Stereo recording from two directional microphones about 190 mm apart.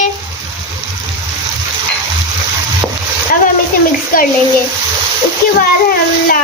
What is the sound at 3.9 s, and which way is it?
Speech, 50° left (ahead or behind).